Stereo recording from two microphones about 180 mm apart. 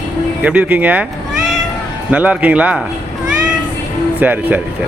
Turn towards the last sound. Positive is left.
turn(degrees=-10)  # may be behind; listen again after turning